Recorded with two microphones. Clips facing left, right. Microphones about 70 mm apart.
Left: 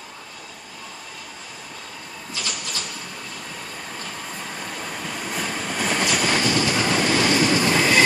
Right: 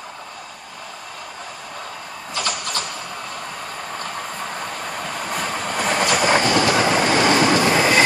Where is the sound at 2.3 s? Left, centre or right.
Right.